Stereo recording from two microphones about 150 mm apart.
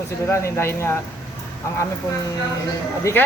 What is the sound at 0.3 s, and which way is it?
Speech, 15° left (ahead or behind).